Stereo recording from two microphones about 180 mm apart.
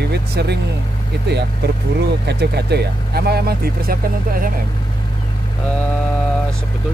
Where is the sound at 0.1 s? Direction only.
70° right (ahead or behind).